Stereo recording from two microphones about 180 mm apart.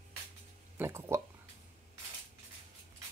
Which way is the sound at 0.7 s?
15° right (ahead or behind).